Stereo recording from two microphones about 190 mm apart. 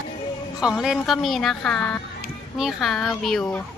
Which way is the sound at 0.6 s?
5° right (ahead or behind).